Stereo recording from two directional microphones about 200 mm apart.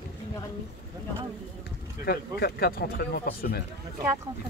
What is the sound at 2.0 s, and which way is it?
Speech, 50° left (ahead or behind).